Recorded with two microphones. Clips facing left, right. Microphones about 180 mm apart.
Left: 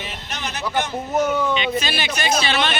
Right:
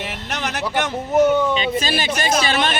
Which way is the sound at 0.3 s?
80° right.